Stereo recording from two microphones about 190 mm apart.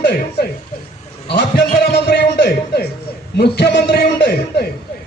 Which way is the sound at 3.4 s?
60° left (ahead or behind).